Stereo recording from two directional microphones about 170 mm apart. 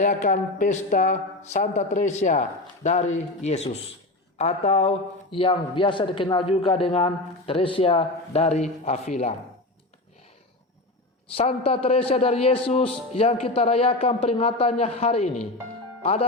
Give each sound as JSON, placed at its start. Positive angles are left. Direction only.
{"t": 0.0, "sound": "a man's voice", "side_deg": 50}
{"t": 11.3, "sound": "a man's voice", "side_deg": 35}